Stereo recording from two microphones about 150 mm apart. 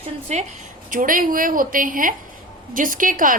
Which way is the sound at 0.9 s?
65° right (ahead or behind).